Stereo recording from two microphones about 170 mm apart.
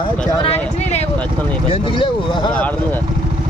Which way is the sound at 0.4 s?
40° left (ahead or behind).